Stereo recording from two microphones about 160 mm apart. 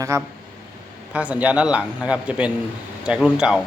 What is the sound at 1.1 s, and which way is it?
A man's voice, 10° right (ahead or behind).